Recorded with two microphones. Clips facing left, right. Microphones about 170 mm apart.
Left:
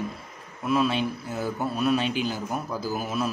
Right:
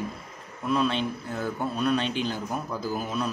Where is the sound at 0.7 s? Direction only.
5° left (ahead or behind).